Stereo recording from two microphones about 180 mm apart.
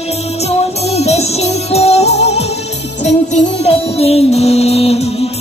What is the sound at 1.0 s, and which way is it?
Music, 35° left (ahead or behind).